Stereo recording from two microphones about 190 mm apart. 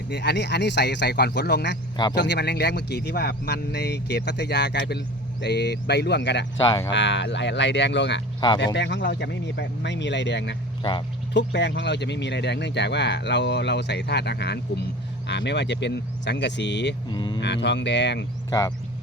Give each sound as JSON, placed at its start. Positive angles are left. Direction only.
{"t": 0.1, "sound": "speech", "side_deg": 65}
{"t": 6.6, "sound": "speech", "side_deg": 20}
{"t": 6.9, "sound": "speech", "side_deg": 70}
{"t": 8.4, "sound": "speech", "side_deg": 25}
{"t": 8.6, "sound": "speech", "side_deg": 65}
{"t": 17.1, "sound": "speech", "side_deg": 25}
{"t": 17.4, "sound": "speech", "side_deg": 65}